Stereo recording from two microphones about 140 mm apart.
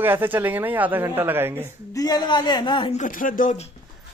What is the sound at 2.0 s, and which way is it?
Speech, 30° left (ahead or behind).